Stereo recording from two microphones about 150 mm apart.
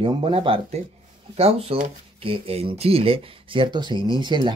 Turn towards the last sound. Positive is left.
turn(degrees=-30)  # may be behind; listen again after turning